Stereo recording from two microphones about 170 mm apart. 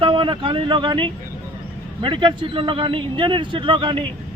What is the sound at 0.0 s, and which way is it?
A man's voice, 30° right (ahead or behind).